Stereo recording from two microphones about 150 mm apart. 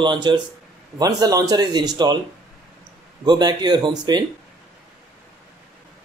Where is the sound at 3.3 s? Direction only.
30° right (ahead or behind).